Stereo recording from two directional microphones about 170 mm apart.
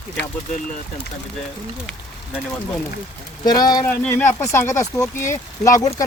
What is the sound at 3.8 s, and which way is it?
Speech, 10° left (ahead or behind).